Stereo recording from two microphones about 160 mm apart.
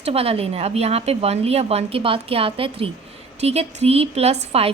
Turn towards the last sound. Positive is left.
turn(degrees=-40)  # may be behind; listen again after turning